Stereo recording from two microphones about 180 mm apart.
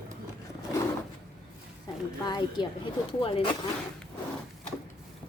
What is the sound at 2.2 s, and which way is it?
A woman's voice, 25° left (ahead or behind).